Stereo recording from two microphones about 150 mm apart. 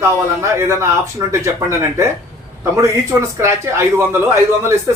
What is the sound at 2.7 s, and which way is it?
Speech, 20° right (ahead or behind).